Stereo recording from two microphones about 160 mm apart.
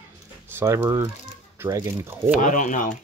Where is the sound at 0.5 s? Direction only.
15° right (ahead or behind).